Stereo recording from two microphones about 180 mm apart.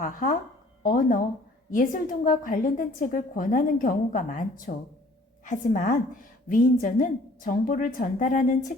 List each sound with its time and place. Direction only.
0.0 s a woman's voice: 45° left (ahead or behind)